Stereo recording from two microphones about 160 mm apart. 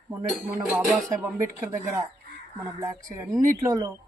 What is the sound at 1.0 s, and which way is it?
Speech, 20° right (ahead or behind).